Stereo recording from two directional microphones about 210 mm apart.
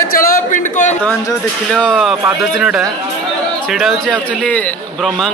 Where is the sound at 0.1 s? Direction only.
40° left (ahead or behind).